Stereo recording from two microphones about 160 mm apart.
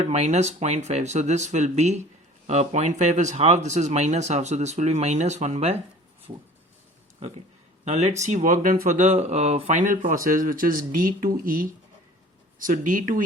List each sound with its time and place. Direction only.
0.1 s speech: 45° right (ahead or behind)
7.9 s speech: 45° right (ahead or behind)